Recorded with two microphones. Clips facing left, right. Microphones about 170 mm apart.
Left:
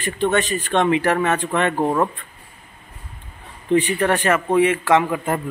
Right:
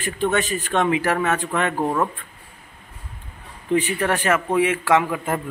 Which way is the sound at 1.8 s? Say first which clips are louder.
Left 3 dB; 15° left (ahead or behind).